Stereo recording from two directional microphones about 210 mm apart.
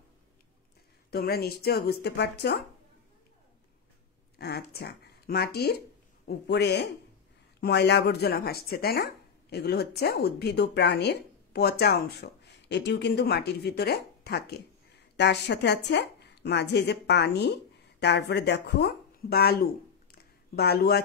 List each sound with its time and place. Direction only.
1.1 s speech: 45° left (ahead or behind)
4.4 s speech: 50° left (ahead or behind)